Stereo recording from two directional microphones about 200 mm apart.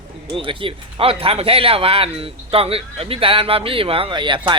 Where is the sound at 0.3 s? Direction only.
25° right (ahead or behind).